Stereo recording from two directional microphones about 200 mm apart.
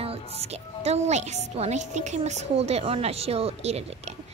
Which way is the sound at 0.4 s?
30° right (ahead or behind).